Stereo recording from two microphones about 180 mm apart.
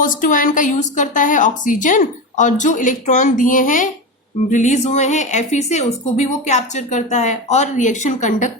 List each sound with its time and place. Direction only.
0.0 s a woman's voice: 50° left (ahead or behind)